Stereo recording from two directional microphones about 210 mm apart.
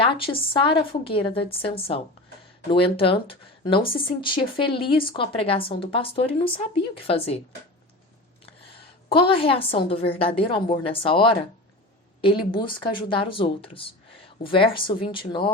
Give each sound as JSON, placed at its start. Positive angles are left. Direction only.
{"t": 0.0, "sound": "a woman's voice", "side_deg": 25}
{"t": 9.0, "sound": "speech", "side_deg": 25}